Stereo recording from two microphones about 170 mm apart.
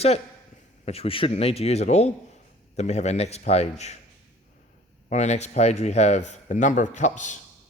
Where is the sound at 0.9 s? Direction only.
35° left (ahead or behind).